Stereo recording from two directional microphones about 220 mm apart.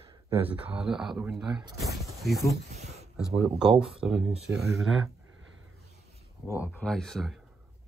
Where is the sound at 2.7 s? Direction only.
30° right (ahead or behind).